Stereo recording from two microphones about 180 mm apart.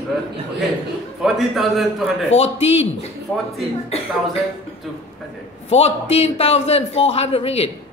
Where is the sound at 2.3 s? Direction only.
35° left (ahead or behind).